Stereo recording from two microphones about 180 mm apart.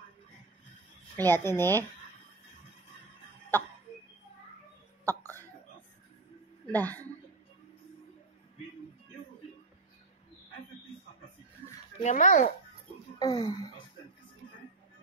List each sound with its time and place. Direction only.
1.1 s speech: 10° left (ahead or behind)
5.0 s a sound: 10° left (ahead or behind)
6.7 s speech: 10° left (ahead or behind)
12.0 s a child's voice: 40° left (ahead or behind)
13.2 s speech: 25° left (ahead or behind)